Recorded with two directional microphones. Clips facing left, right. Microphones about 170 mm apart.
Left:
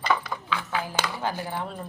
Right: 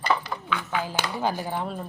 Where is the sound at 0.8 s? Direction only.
20° right (ahead or behind).